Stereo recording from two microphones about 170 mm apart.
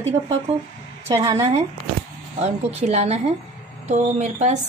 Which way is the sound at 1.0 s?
20° right (ahead or behind).